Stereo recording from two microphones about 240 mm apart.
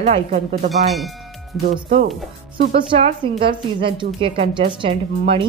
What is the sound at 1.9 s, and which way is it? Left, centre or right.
Speech, right.